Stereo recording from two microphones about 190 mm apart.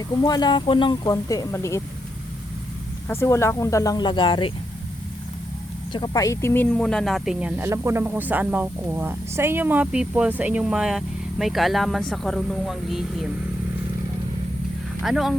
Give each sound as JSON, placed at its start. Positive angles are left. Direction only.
{"t": 0.3, "sound": "speech", "side_deg": 20}
{"t": 3.1, "sound": "speech", "side_deg": 15}
{"t": 5.9, "sound": "speech", "side_deg": 20}
{"t": 15.0, "sound": "speech", "side_deg": 0}